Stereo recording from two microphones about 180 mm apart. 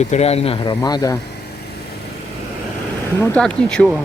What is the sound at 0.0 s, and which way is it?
Speech, 35° left (ahead or behind).